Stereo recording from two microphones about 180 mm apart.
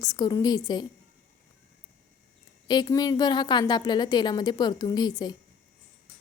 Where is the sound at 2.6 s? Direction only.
20° left (ahead or behind).